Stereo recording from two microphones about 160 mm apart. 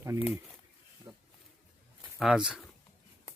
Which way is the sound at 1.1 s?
30° right (ahead or behind).